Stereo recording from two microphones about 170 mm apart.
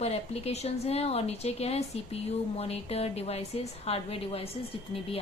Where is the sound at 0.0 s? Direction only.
40° left (ahead or behind).